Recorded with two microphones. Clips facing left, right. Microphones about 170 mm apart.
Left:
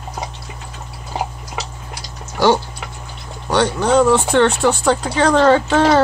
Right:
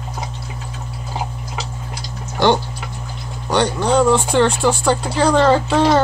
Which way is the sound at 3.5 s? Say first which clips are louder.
Left 1 dB; centre (ahead or behind).